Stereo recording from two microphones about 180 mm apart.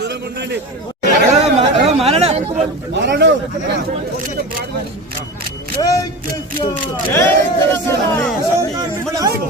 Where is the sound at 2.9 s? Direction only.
75° right (ahead or behind).